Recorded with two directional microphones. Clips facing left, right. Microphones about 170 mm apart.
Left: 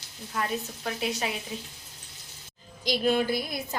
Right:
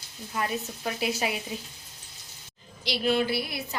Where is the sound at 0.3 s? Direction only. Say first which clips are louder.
Even; 5° right (ahead or behind).